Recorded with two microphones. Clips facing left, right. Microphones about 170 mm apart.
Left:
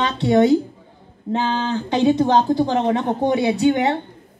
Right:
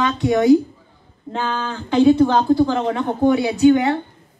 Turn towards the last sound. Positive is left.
turn(degrees=25)  # may be behind; listen again after turning